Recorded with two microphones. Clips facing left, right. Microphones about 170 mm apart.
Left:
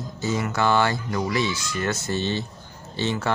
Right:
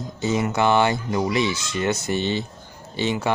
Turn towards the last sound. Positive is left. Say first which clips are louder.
# right 2 dB
turn(degrees=-15)  # may be behind; listen again after turning